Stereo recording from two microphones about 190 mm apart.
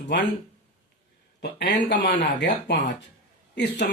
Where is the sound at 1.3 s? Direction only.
65° left (ahead or behind).